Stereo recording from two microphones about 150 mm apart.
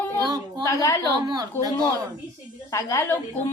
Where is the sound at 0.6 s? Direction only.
20° left (ahead or behind).